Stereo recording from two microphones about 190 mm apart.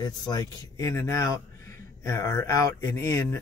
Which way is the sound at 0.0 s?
20° left (ahead or behind).